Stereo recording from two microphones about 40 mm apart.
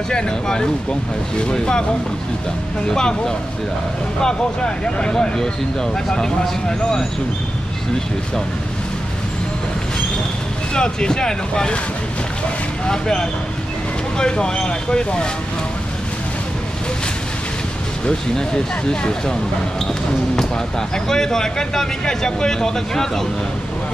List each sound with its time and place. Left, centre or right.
0.1 s speech: centre
2.9 s speech: centre
5.1 s speech: centre
10.7 s speech: centre
12.8 s speech: centre
18.3 s speech: centre